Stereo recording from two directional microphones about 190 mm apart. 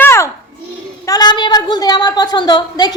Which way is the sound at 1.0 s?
20° left (ahead or behind).